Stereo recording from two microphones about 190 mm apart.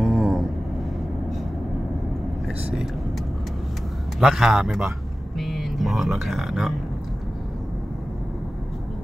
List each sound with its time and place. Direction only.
0.0 s vehicle: centre (ahead or behind)
2.4 s vehicle: centre (ahead or behind)
4.2 s a man's voice: centre (ahead or behind)